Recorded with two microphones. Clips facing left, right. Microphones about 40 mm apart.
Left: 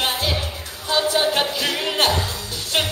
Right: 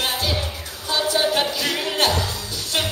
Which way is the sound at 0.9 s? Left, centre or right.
Left.